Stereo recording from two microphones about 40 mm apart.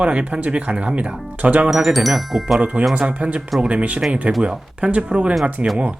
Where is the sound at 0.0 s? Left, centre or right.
Right.